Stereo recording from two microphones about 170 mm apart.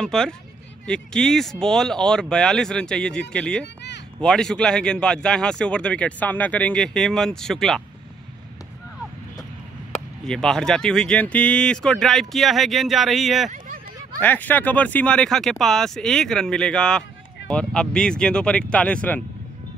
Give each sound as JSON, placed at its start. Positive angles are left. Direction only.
{"t": 0.0, "sound": "speech", "side_deg": 5}
{"t": 3.6, "sound": "a sound", "side_deg": 90}
{"t": 4.2, "sound": "speech", "side_deg": 5}
{"t": 10.2, "sound": "speech", "side_deg": 5}
{"t": 14.2, "sound": "speech", "side_deg": 10}